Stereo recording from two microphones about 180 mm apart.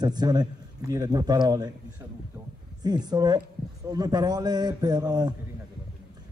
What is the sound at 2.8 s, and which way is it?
A man's voice, 20° right (ahead or behind).